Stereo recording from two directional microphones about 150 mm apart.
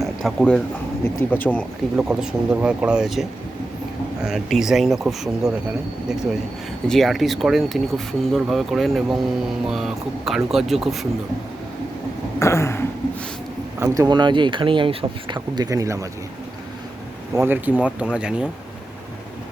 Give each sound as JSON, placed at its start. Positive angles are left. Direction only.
{"t": 0.0, "sound": "a sound", "side_deg": 0}
{"t": 1.0, "sound": "speech", "side_deg": 10}
{"t": 2.0, "sound": "speech", "side_deg": -5}
{"t": 6.8, "sound": "speech", "side_deg": 0}
{"t": 12.4, "sound": "a sound", "side_deg": 20}
{"t": 13.7, "sound": "speech", "side_deg": -20}
{"t": 17.3, "sound": "speech", "side_deg": -15}